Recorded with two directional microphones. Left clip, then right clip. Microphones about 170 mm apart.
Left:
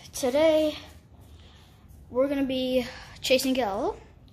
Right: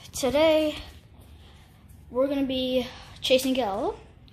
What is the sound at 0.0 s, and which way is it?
Speech, 5° right (ahead or behind).